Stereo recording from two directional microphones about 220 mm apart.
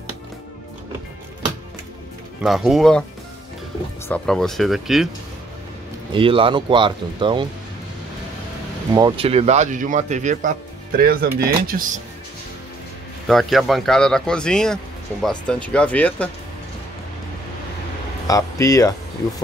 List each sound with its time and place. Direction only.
2.4 s speech: centre (ahead or behind)
4.1 s speech: centre (ahead or behind)
6.1 s speech: 25° right (ahead or behind)
8.9 s speech: 20° right (ahead or behind); by 12.0 s 40° right (ahead or behind)
13.3 s speech: centre (ahead or behind)
18.2 s speech: 15° left (ahead or behind)